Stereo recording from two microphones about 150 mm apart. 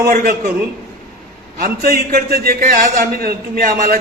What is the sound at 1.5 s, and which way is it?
A man's voice, 75° right (ahead or behind).